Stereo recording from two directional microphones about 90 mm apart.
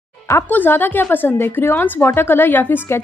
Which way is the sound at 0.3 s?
25° left (ahead or behind).